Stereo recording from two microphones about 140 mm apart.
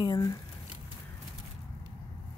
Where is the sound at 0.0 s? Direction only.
30° left (ahead or behind).